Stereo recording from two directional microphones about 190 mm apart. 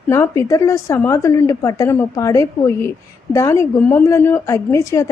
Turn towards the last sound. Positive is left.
turn(degrees=15)  # may be behind; listen again after turning